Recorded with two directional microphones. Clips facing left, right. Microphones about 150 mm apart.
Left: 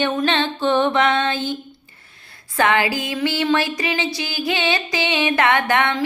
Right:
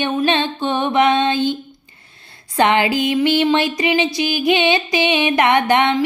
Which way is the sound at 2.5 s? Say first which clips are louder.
Right 3 dB; 20° right (ahead or behind).